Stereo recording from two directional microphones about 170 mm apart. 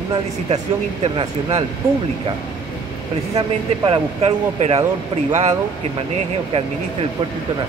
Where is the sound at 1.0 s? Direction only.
35° right (ahead or behind).